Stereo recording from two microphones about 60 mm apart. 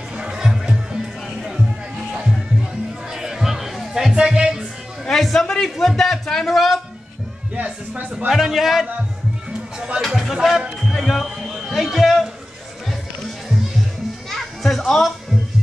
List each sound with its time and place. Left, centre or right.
0.2 s music: centre
3.1 s music: centre
5.0 s a sound: centre
7.5 s speech: right
8.3 s speech: centre
10.0 s speech: centre
14.3 s children playing: centre